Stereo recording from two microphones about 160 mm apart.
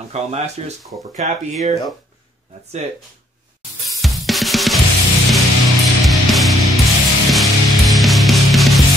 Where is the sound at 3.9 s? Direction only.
Centre (ahead or behind).